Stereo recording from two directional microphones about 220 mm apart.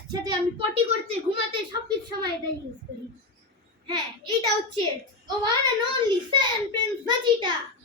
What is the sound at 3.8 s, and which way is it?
Speech, 20° right (ahead or behind).